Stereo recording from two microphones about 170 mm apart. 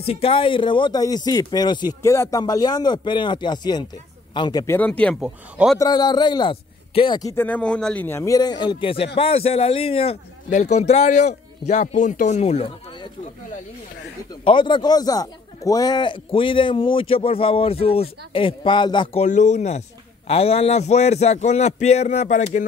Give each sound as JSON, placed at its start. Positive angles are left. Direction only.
{"t": 0.0, "sound": "speech", "side_deg": 35}
{"t": 4.7, "sound": "speech", "side_deg": 10}
{"t": 5.2, "sound": "speech", "side_deg": -5}
{"t": 5.8, "sound": "speech", "side_deg": 25}
{"t": 7.4, "sound": "a man's voice", "side_deg": 5}
{"t": 14.4, "sound": "speech", "side_deg": 30}
{"t": 19.2, "sound": "a man's voice", "side_deg": 45}